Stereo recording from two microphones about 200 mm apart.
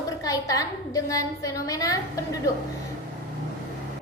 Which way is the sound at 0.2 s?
15° left (ahead or behind).